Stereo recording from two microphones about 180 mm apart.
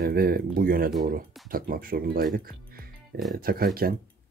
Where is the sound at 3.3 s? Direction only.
55° right (ahead or behind).